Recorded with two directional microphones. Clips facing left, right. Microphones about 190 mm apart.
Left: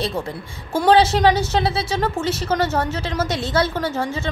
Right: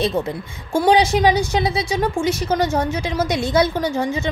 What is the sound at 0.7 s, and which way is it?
A woman's voice, 15° right (ahead or behind).